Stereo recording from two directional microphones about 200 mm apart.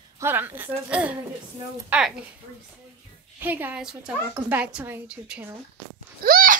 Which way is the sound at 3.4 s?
10° right (ahead or behind).